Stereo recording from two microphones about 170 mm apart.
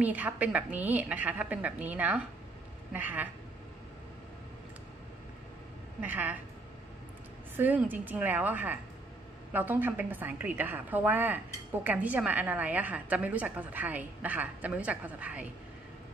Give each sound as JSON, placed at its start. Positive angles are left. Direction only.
{"t": 0.0, "sound": "a woman's voice", "side_deg": -10}
{"t": 5.9, "sound": "a woman's voice", "side_deg": -10}
{"t": 7.5, "sound": "a woman's voice", "side_deg": -10}